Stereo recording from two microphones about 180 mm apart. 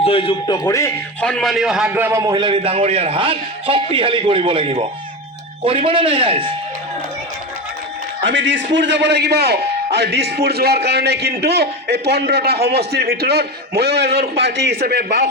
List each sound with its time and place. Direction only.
0.0 s a man's voice: 30° left (ahead or behind)
1.2 s a man's voice: 5° left (ahead or behind); by 2.3 s 15° right (ahead or behind)
2.3 s a man's voice: 30° right (ahead or behind)
8.2 s a man's voice: 90° right; by 15.3 s 60° right (ahead or behind)